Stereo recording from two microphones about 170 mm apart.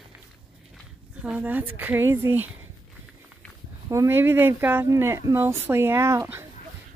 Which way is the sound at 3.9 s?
15° right (ahead or behind).